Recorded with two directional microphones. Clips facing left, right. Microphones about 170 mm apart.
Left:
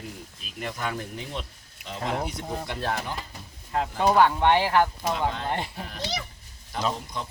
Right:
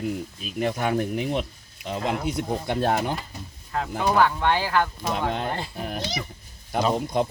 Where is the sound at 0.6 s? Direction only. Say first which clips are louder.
Right 8 dB; 55° right (ahead or behind).